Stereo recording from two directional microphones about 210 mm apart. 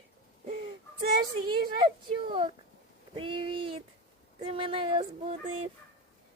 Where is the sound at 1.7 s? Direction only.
20° right (ahead or behind).